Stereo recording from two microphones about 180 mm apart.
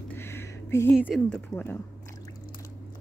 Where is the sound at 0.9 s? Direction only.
5° right (ahead or behind).